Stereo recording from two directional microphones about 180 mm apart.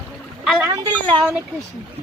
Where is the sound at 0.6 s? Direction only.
20° right (ahead or behind).